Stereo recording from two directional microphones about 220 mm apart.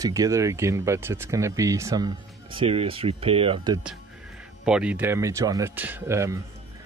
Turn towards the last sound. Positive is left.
turn(degrees=-10)  # may be behind; listen again after turning